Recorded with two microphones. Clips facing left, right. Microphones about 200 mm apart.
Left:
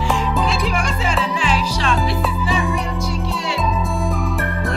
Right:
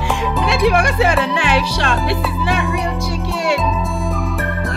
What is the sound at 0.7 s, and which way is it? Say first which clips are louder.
Speech: right 7 dB; 65° right (ahead or behind).